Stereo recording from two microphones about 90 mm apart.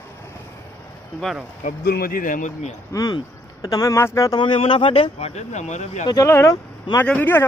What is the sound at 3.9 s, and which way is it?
Speech, 30° left (ahead or behind).